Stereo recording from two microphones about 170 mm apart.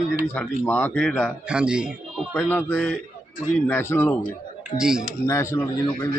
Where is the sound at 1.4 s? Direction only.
5° right (ahead or behind).